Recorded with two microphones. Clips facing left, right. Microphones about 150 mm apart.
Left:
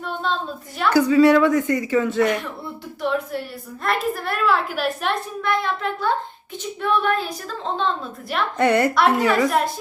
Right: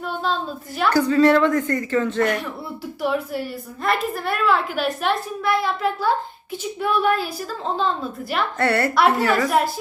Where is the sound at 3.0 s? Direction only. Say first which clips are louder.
Even; 5° right (ahead or behind).